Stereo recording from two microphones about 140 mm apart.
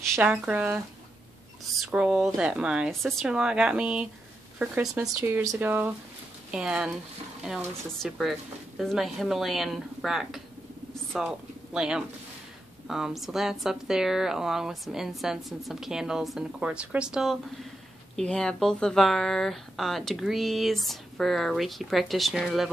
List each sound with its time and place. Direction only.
0.1 s speech: 10° right (ahead or behind)
1.8 s speech: 5° right (ahead or behind)